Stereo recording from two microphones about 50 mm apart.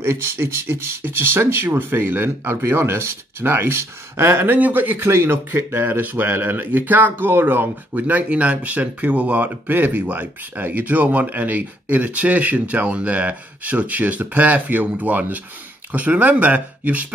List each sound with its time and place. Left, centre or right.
0.0 s speech: right
4.5 s speech: right
4.9 s speech: right
5.9 s speech: right